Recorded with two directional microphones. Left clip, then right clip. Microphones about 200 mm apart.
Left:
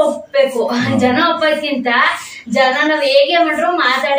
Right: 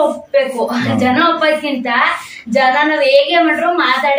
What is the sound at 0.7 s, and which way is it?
Speech, 15° right (ahead or behind).